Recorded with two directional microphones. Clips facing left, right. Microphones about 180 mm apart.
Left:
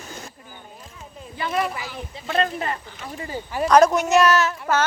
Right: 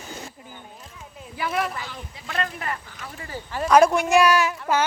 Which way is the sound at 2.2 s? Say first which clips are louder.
Left 5 dB; 25° left (ahead or behind).